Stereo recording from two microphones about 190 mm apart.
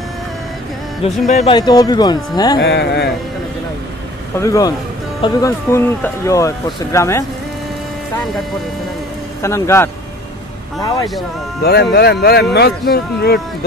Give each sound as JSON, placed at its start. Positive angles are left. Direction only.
{"t": 1.0, "sound": "speech", "side_deg": 35}
{"t": 1.5, "sound": "speech", "side_deg": 20}
{"t": 2.6, "sound": "speech", "side_deg": 60}
{"t": 4.4, "sound": "speech", "side_deg": 15}
{"t": 9.4, "sound": "speech", "side_deg": 15}
{"t": 11.6, "sound": "speech", "side_deg": 55}